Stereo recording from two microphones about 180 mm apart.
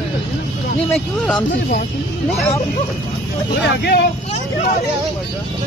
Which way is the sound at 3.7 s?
65° left (ahead or behind).